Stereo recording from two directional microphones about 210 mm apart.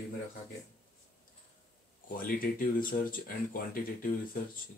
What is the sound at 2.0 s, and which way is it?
Speech, 40° left (ahead or behind).